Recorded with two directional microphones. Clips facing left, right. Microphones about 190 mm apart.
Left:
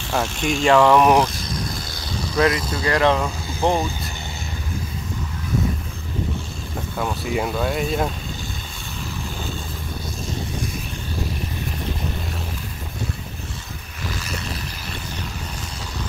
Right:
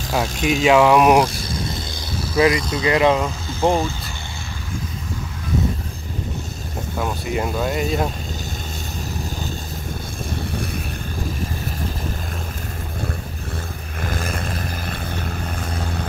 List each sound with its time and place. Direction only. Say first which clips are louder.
0.1 s speech: right 2 dB; 5° right (ahead or behind)
1.2 s vehicle: right 2 dB; 30° right (ahead or behind)
2.1 s speech: right 2 dB; 5° right (ahead or behind)
7.0 s speech: even; 5° right (ahead or behind)
14.0 s vehicle: right 4 dB; 50° right (ahead or behind)
15.4 s vehicle: right 6 dB; 55° right (ahead or behind)